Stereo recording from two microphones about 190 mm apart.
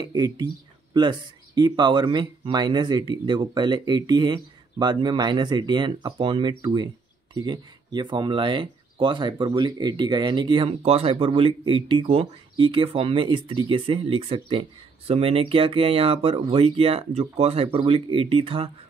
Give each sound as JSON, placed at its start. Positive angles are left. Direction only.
{"t": 0.0, "sound": "speech", "side_deg": -20}